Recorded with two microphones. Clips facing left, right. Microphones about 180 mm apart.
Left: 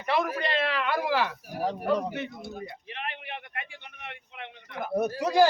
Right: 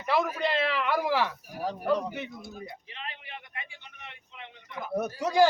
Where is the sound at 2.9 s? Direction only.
65° left (ahead or behind).